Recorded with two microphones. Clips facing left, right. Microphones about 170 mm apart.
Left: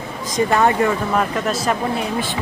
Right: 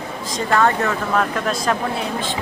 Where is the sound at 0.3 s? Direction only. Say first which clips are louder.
Left 2 dB; 15° left (ahead or behind).